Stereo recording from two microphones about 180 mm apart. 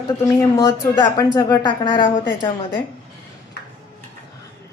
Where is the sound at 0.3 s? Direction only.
15° left (ahead or behind).